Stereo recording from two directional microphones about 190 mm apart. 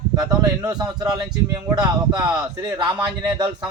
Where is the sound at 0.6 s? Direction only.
20° right (ahead or behind).